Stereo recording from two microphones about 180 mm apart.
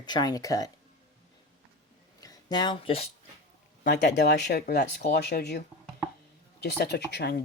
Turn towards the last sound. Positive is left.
turn(degrees=65)  # may be behind; listen again after turning